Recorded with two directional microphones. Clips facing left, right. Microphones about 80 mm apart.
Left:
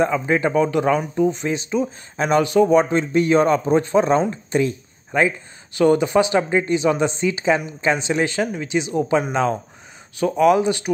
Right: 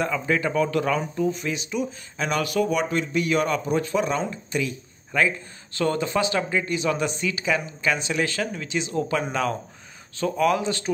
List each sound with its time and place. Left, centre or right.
0.0 s speech: left
5.8 s speech: centre